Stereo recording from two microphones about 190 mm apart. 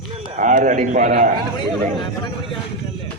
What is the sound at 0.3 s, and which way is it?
Speech, 40° right (ahead or behind).